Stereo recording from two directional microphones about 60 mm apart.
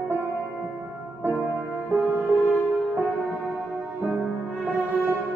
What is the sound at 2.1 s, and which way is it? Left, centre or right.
Music, right.